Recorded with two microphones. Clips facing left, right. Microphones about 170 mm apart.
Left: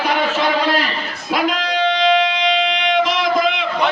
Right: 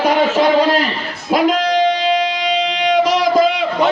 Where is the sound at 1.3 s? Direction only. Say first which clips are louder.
Right 5 dB; 40° right (ahead or behind).